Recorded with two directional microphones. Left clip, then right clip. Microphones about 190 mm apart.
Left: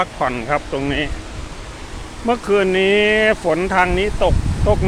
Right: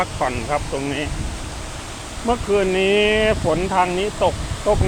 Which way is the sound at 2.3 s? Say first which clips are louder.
Left 3 dB; 25° left (ahead or behind).